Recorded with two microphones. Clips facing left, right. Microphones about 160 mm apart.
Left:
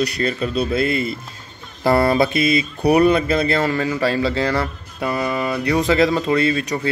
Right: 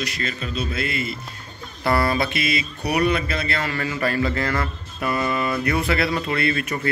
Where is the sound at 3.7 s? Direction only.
15° left (ahead or behind).